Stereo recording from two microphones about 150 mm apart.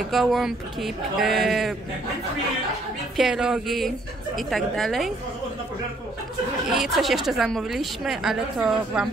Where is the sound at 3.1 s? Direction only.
5° right (ahead or behind).